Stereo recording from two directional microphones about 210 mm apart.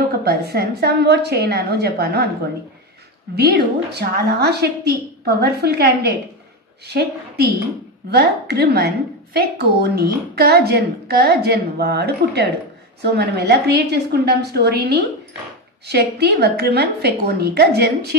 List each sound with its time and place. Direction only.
0.2 s a woman's voice: 45° right (ahead or behind)
3.3 s a woman's voice: 50° right (ahead or behind)